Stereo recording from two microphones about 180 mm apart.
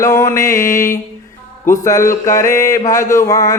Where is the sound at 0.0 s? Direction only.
15° left (ahead or behind).